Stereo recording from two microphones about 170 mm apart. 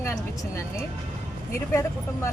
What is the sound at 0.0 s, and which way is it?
Music, 15° left (ahead or behind).